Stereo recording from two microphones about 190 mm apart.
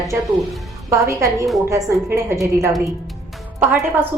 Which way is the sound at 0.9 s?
15° right (ahead or behind).